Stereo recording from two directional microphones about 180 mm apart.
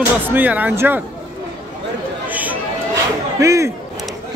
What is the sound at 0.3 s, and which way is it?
Speech, 10° right (ahead or behind).